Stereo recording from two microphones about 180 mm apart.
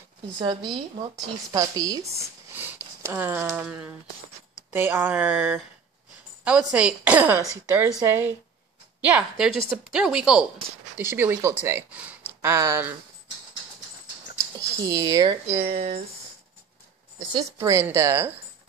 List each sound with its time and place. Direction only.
0.4 s a woman's voice: 25° right (ahead or behind); by 5.6 s 10° right (ahead or behind)
6.7 s a woman's voice: 5° right (ahead or behind)
14.8 s a woman's voice: 20° right (ahead or behind)
15.4 s speech: 35° right (ahead or behind)
17.3 s a woman's voice: 15° right (ahead or behind)